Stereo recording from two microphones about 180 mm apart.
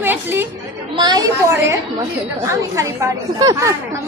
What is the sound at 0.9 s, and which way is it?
Speech, 25° right (ahead or behind).